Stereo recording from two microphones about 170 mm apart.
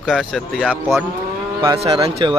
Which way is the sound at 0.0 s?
Centre (ahead or behind).